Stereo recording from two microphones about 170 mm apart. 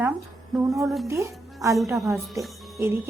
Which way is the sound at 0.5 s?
Centre (ahead or behind).